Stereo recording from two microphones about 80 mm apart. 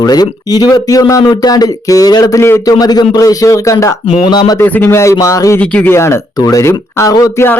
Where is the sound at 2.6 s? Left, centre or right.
Left.